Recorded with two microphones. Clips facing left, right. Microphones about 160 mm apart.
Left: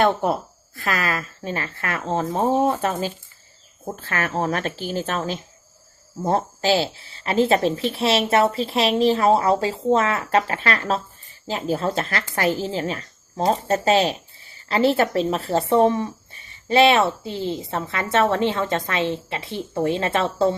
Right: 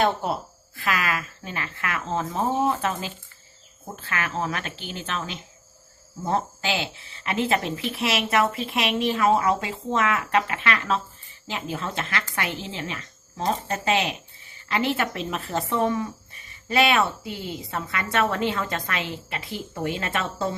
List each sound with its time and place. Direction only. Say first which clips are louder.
0.0 s a woman's voice: left 4 dB; 55° left (ahead or behind)
0.8 s speech: left 2 dB; 40° left (ahead or behind)